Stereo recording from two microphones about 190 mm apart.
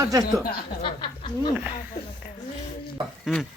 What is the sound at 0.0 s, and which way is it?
Speech, 15° right (ahead or behind).